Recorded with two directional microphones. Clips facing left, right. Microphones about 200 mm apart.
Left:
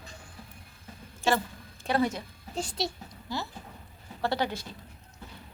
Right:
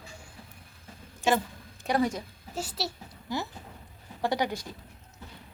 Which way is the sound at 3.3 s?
20° right (ahead or behind).